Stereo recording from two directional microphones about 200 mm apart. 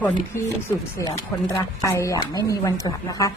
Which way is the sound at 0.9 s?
15° left (ahead or behind).